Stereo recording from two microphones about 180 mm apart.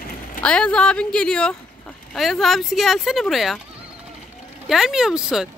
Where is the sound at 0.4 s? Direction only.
5° left (ahead or behind).